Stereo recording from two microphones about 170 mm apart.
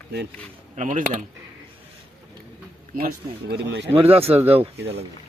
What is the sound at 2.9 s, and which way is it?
Speech, 65° right (ahead or behind).